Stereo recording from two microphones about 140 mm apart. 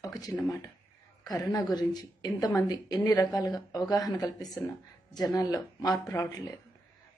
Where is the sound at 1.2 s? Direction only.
25° left (ahead or behind).